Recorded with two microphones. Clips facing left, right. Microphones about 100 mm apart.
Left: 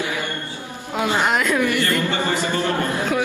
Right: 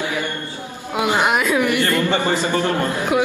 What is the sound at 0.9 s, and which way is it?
A man's voice, 15° right (ahead or behind).